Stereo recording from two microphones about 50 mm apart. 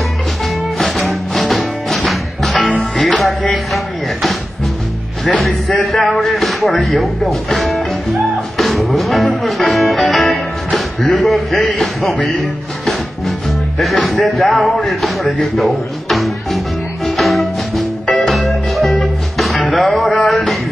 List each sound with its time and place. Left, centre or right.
0.7 s music: centre
5.2 s a sound: centre
12.3 s speech: centre
15.5 s music: centre